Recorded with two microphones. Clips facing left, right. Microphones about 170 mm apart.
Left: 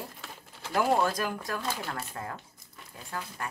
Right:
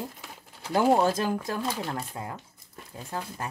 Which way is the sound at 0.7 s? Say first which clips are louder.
Right 4 dB; 25° right (ahead or behind).